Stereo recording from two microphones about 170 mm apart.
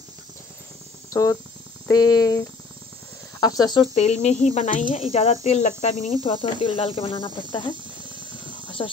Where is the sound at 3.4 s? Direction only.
25° left (ahead or behind).